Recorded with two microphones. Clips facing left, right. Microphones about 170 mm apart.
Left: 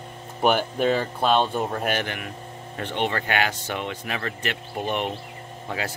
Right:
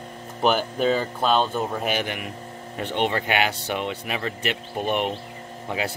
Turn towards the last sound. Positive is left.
turn(degrees=-15)  # may be behind; listen again after turning